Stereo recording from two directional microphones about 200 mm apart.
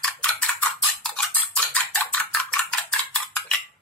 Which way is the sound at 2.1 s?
5° left (ahead or behind).